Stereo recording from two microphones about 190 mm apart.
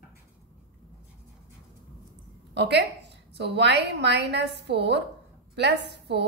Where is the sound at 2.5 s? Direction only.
65° right (ahead or behind).